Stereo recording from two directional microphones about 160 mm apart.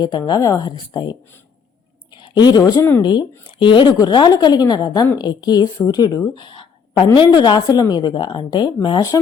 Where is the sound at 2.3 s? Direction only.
25° left (ahead or behind).